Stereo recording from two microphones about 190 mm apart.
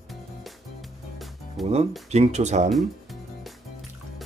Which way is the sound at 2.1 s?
35° right (ahead or behind).